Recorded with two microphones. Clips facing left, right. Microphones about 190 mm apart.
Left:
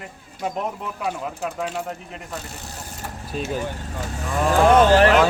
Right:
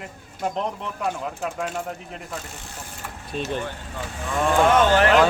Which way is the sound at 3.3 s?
5° left (ahead or behind).